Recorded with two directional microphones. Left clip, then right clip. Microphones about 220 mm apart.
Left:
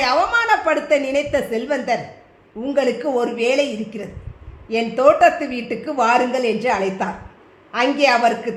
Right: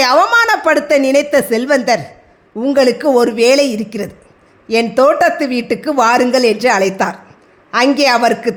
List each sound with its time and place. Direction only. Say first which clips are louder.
0.0 s a woman's voice: right 7 dB; 45° right (ahead or behind)